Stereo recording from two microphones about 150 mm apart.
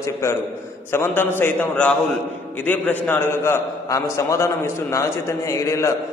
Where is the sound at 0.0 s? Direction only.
20° left (ahead or behind).